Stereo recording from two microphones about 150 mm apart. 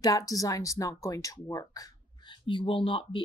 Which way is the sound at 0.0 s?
25° left (ahead or behind).